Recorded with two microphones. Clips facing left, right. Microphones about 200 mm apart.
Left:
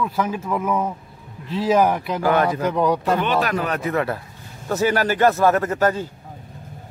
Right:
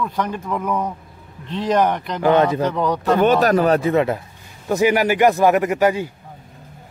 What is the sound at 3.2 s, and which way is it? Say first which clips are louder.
A man's voice: right 7 dB; 40° right (ahead or behind).